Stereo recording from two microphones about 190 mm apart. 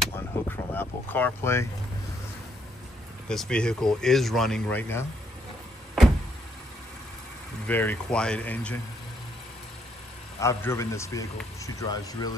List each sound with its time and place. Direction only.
0.1 s vehicle: 10° left (ahead or behind)
3.3 s speech: 5° left (ahead or behind)
7.6 s speech: 10° left (ahead or behind)
10.4 s speech: 15° left (ahead or behind)